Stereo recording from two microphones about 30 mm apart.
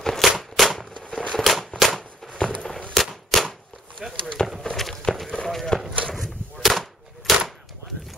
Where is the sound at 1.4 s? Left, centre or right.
Centre.